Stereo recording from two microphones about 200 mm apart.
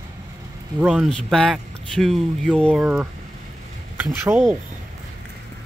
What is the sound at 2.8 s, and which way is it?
Speech, 5° right (ahead or behind).